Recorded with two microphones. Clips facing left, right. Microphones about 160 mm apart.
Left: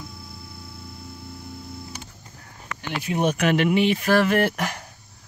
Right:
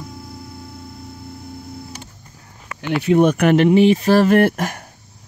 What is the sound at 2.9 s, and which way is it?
Speech, 65° right (ahead or behind).